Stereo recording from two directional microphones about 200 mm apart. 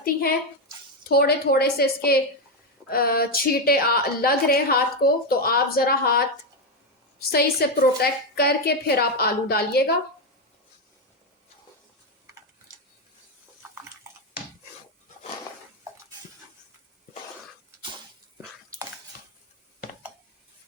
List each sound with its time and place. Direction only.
0.0 s a woman's voice: 50° left (ahead or behind)